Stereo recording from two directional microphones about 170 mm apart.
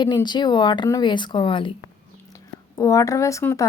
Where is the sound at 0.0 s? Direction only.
25° left (ahead or behind).